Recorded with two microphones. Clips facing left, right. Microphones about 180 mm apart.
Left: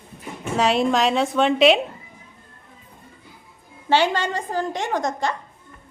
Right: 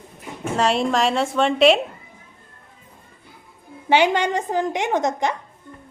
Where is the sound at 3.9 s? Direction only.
15° right (ahead or behind).